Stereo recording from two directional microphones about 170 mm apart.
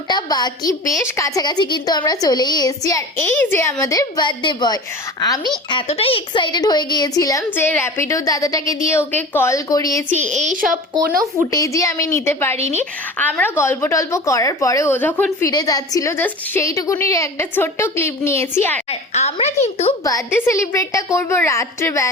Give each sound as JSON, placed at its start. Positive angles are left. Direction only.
{"t": 0.1, "sound": "a woman's voice", "side_deg": 25}
{"t": 10.2, "sound": "a woman's voice", "side_deg": -45}
{"t": 11.5, "sound": "a woman's voice", "side_deg": 20}
{"t": 12.5, "sound": "a woman's voice", "side_deg": -40}
{"t": 12.8, "sound": "a woman's voice", "side_deg": 10}
{"t": 18.9, "sound": "a woman's voice", "side_deg": 40}
{"t": 20.1, "sound": "a woman's voice", "side_deg": 20}